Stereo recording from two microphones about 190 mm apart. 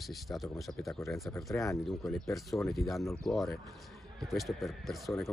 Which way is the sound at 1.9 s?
Centre (ahead or behind).